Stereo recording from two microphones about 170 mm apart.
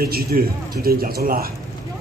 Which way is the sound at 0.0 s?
60° right (ahead or behind).